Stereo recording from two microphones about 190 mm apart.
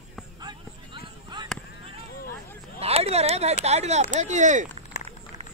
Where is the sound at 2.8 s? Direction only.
30° right (ahead or behind).